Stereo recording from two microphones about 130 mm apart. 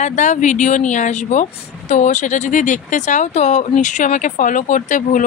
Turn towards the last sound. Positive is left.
turn(degrees=85)